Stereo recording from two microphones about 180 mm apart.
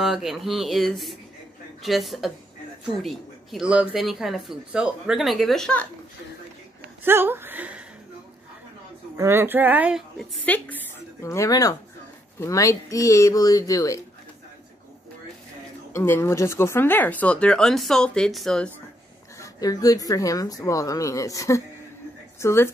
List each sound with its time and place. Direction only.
0.0 s speech: centre (ahead or behind)
7.1 s speech: 10° right (ahead or behind)
9.1 s speech: 15° right (ahead or behind)
10.4 s speech: 10° left (ahead or behind)
15.9 s speech: 15° left (ahead or behind)
19.4 s speech: 20° left (ahead or behind)